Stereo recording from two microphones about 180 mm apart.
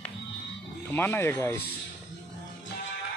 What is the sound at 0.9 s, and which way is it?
Speech, 10° left (ahead or behind).